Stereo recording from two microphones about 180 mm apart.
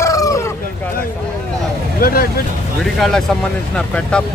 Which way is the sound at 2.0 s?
55° left (ahead or behind).